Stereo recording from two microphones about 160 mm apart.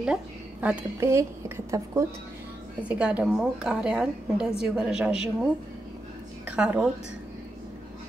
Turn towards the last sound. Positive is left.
turn(degrees=-5)  # may be behind; listen again after turning